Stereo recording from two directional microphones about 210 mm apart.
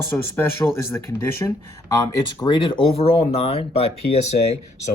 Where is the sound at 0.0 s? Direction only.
10° left (ahead or behind).